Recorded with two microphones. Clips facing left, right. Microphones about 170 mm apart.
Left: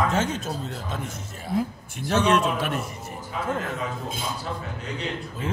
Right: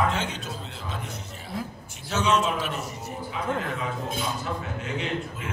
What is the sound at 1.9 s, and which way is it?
A man's voice, 60° left (ahead or behind).